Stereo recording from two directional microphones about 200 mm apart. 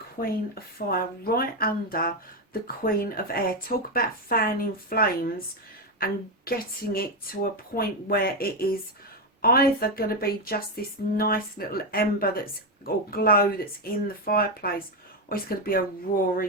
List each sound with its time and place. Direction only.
0.2 s speech: 50° left (ahead or behind)